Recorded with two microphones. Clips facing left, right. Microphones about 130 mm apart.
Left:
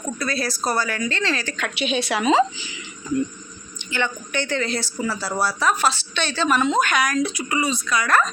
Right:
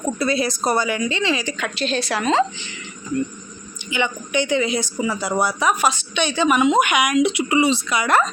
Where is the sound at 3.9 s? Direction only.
15° right (ahead or behind).